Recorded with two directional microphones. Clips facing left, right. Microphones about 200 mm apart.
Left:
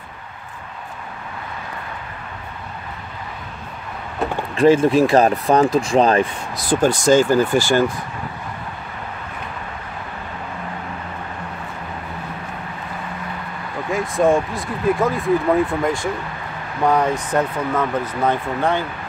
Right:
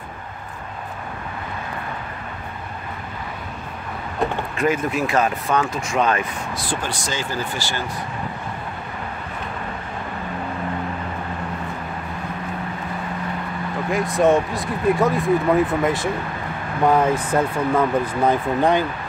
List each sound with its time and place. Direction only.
4.6 s speech: 30° left (ahead or behind); by 7.8 s 50° left (ahead or behind)
13.8 s speech: centre (ahead or behind)